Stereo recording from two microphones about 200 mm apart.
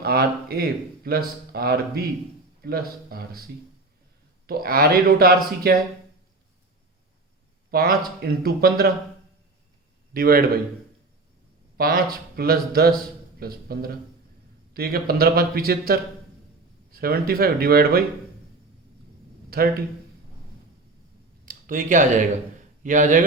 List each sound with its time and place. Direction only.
0.0 s speech: 50° right (ahead or behind)
4.4 s speech: 50° right (ahead or behind)
7.7 s speech: 50° right (ahead or behind)
10.2 s speech: 50° right (ahead or behind)
11.8 s speech: 45° right (ahead or behind)
19.5 s speech: 50° right (ahead or behind)
21.4 s a man's voice: 45° right (ahead or behind)